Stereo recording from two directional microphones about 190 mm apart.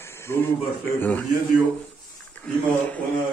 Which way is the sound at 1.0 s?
10° left (ahead or behind).